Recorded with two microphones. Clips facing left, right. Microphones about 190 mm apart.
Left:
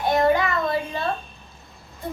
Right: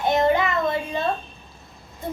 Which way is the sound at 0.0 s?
20° right (ahead or behind).